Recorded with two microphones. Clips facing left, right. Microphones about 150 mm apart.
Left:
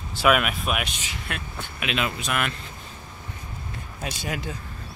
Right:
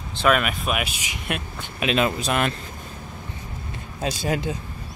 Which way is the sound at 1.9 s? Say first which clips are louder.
Right 6 dB; 35° right (ahead or behind).